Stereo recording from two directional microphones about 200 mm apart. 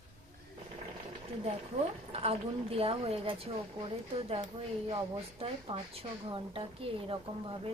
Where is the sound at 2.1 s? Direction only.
30° right (ahead or behind).